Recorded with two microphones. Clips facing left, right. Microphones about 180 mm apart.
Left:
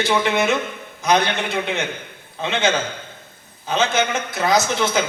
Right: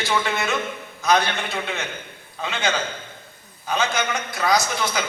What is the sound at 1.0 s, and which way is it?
A man's voice, 20° left (ahead or behind).